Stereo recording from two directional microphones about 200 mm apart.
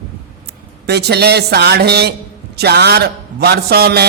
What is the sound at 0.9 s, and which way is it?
Speech, 55° right (ahead or behind).